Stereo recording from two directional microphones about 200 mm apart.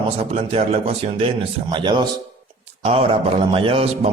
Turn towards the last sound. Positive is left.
turn(degrees=-30)  # may be behind; listen again after turning